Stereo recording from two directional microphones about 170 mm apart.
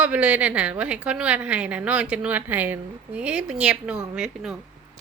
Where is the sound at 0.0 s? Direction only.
10° right (ahead or behind).